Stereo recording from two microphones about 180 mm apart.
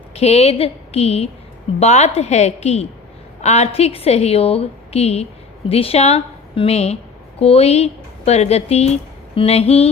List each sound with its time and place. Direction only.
0.1 s a woman's voice: 35° left (ahead or behind)